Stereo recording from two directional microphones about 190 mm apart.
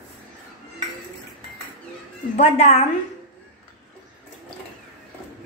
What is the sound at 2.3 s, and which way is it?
Speech, 35° left (ahead or behind).